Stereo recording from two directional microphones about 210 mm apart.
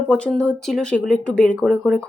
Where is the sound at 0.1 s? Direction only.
5° left (ahead or behind).